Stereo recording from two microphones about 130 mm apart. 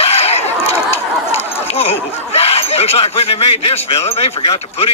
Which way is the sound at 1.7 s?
50° left (ahead or behind).